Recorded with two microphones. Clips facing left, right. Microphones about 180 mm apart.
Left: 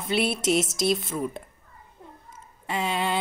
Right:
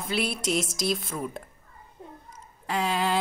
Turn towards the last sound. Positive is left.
turn(degrees=0)  # may be behind; listen again after turning